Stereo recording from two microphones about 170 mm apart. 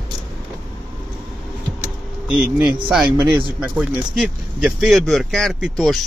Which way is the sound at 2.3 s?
10° right (ahead or behind).